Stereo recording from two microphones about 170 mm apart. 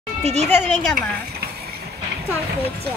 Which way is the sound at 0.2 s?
40° right (ahead or behind).